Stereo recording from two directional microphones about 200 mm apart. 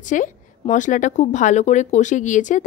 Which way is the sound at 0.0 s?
40° left (ahead or behind).